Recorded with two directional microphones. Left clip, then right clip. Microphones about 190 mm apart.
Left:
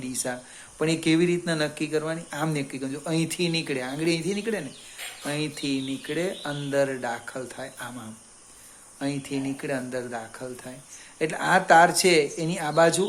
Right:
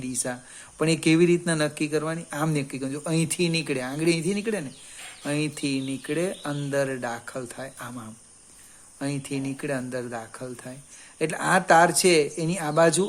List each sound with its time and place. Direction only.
0.0 s speech: 35° right (ahead or behind)